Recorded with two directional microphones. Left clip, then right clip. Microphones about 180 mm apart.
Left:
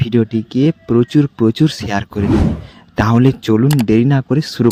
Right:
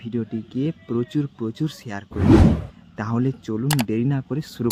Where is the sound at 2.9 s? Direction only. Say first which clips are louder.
Left 12 dB; 45° left (ahead or behind).